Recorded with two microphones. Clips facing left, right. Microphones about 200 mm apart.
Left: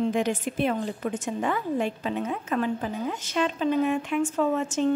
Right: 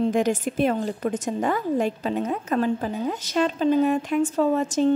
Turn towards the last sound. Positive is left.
turn(degrees=-35)  # may be behind; listen again after turning